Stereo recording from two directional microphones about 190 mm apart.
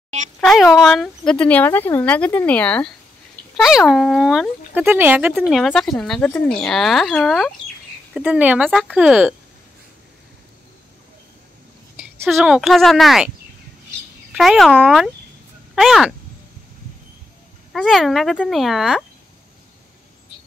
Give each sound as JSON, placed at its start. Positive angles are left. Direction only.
{"t": 0.4, "sound": "speech", "side_deg": 0}
{"t": 5.5, "sound": "speech", "side_deg": 0}
{"t": 12.2, "sound": "speech", "side_deg": 0}
{"t": 14.3, "sound": "speech", "side_deg": 0}
{"t": 17.7, "sound": "speech", "side_deg": 0}